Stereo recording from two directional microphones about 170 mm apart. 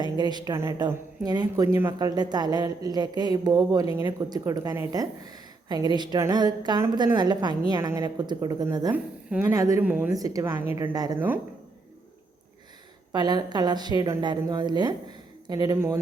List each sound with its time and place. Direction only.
0.0 s speech: 25° right (ahead or behind)
10.2 s speech: 20° right (ahead or behind)
13.1 s speech: 25° right (ahead or behind)